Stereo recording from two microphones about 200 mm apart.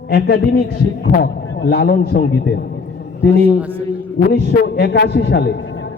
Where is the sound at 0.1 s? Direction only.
55° left (ahead or behind).